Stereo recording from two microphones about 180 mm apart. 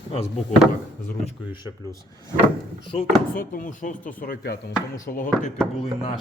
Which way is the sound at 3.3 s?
50° left (ahead or behind).